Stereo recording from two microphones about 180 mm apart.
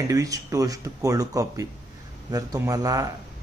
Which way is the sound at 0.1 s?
20° right (ahead or behind).